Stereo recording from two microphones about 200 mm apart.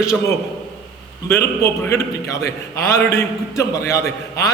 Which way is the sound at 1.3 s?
10° left (ahead or behind).